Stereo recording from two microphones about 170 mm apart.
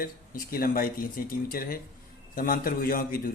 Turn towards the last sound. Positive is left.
turn(degrees=55)  # may be behind; listen again after turning